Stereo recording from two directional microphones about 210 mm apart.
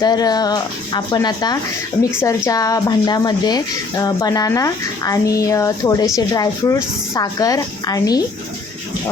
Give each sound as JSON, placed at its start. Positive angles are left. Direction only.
{"t": 0.0, "sound": "speech", "side_deg": 20}